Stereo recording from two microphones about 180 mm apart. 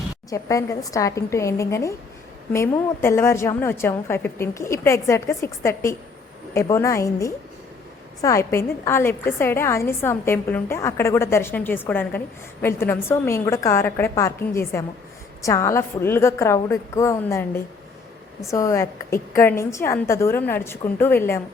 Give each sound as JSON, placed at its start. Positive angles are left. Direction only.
{"t": 0.3, "sound": "a woman's voice", "side_deg": 20}